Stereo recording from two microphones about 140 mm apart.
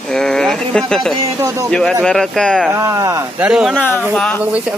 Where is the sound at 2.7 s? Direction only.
20° right (ahead or behind).